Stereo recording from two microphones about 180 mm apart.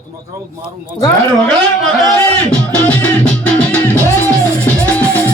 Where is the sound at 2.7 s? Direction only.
10° left (ahead or behind).